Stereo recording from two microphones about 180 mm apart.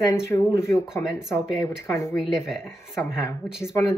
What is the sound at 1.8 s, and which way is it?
Speech, 15° left (ahead or behind).